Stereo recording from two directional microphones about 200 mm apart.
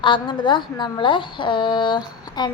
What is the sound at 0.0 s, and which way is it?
Speech, 25° left (ahead or behind).